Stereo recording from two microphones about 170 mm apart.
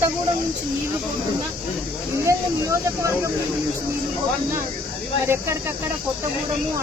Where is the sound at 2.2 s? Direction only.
20° right (ahead or behind).